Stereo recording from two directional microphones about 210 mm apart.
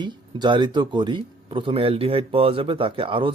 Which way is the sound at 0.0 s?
20° right (ahead or behind).